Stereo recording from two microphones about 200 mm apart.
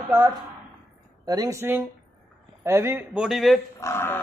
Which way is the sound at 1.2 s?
20° right (ahead or behind).